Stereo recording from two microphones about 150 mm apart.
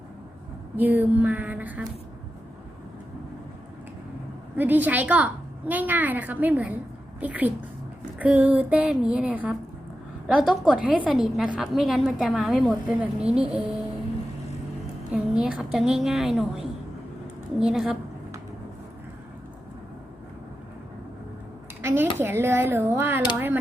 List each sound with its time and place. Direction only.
0.8 s a woman's voice: 10° right (ahead or behind)
4.5 s a woman's voice: 10° right (ahead or behind)
15.1 s a woman's voice: 5° right (ahead or behind)
21.8 s a woman's voice: 15° right (ahead or behind)